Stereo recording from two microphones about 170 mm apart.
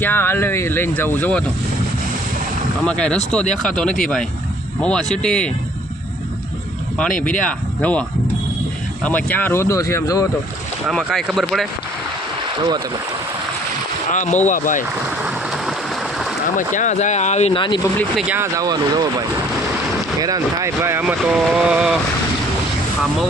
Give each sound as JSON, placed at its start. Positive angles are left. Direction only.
{"t": 0.0, "sound": "speech", "side_deg": 10}
{"t": 2.8, "sound": "speech", "side_deg": 5}
{"t": 7.2, "sound": "speech", "side_deg": 5}
{"t": 9.0, "sound": "speech", "side_deg": 10}
{"t": 10.8, "sound": "speech", "side_deg": 0}
{"t": 14.1, "sound": "speech", "side_deg": 45}
{"t": 15.2, "sound": "a sound", "side_deg": -5}
{"t": 16.6, "sound": "speech", "side_deg": 45}
{"t": 18.2, "sound": "speech", "side_deg": -5}
{"t": 18.5, "sound": "speech", "side_deg": -20}
{"t": 20.1, "sound": "speech", "side_deg": -20}